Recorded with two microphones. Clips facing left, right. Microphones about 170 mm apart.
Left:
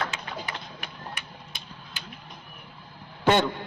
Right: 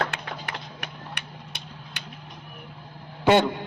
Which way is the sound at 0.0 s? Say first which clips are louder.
Right 2 dB; 60° right (ahead or behind).